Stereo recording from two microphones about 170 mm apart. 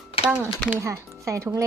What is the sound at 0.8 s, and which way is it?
Speech, 20° right (ahead or behind).